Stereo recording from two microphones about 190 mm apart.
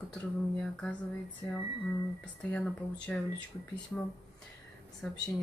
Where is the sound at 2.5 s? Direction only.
5° left (ahead or behind).